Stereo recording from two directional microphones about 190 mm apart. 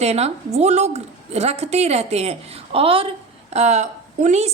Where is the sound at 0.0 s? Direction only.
35° right (ahead or behind).